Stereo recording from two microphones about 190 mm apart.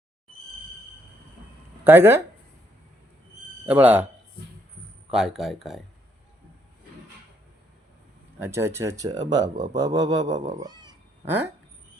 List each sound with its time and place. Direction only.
1.8 s speech: 10° right (ahead or behind)
3.7 s speech: 10° right (ahead or behind)
5.1 s speech: centre (ahead or behind)
8.4 s speech: 15° right (ahead or behind)
10.6 s cat: 20° right (ahead or behind)